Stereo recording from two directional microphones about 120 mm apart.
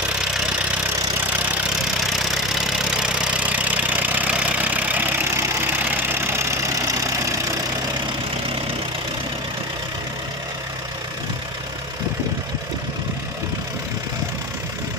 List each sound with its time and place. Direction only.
3.0 s engine: 10° right (ahead or behind)
5.9 s vehicle: 20° right (ahead or behind)